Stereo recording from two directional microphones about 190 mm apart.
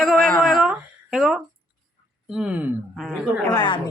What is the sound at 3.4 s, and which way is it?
Speech, 20° left (ahead or behind).